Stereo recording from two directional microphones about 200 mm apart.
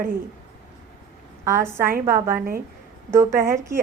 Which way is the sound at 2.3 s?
45° right (ahead or behind).